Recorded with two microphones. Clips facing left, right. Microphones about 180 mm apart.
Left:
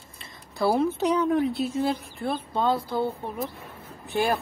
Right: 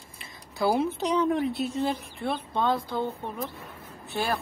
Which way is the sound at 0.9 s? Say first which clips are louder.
Left 2 dB; 10° left (ahead or behind).